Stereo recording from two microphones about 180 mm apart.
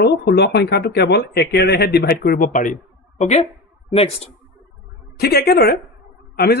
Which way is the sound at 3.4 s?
35° left (ahead or behind).